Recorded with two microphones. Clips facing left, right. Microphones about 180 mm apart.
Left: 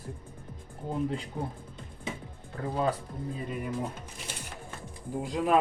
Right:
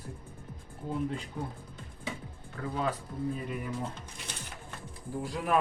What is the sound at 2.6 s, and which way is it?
Speech, 35° left (ahead or behind).